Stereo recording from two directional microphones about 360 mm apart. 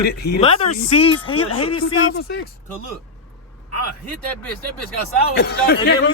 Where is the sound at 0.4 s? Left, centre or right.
Centre.